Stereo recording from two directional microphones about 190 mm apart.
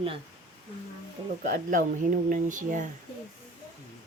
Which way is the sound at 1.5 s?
40° right (ahead or behind).